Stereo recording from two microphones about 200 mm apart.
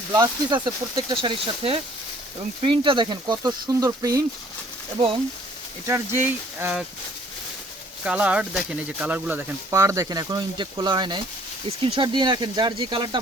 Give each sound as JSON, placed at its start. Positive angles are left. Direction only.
{"t": 0.1, "sound": "speech", "side_deg": -20}
{"t": 5.8, "sound": "speech", "side_deg": -10}
{"t": 8.0, "sound": "speech", "side_deg": -5}